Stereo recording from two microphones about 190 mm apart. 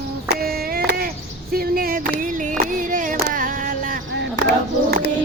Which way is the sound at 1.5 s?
50° right (ahead or behind).